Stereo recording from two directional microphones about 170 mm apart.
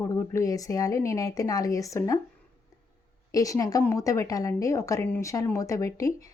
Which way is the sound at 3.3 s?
20° left (ahead or behind).